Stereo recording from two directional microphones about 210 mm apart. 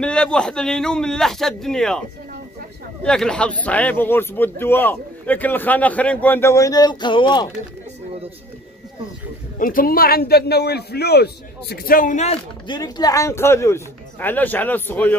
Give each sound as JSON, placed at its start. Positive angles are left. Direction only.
{"t": 0.0, "sound": "a man's voice", "side_deg": 5}
{"t": 9.6, "sound": "a man's voice", "side_deg": 40}